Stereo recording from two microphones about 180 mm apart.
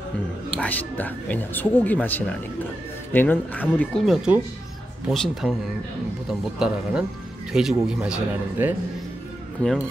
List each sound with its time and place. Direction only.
0.6 s a man's voice: 10° left (ahead or behind)
6.6 s a man's voice: 5° right (ahead or behind)
9.6 s speech: 5° left (ahead or behind)